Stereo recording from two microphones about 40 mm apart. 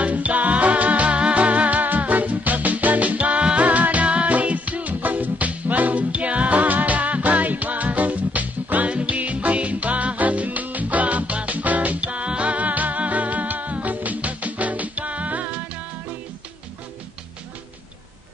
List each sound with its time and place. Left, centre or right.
0.0 s music: right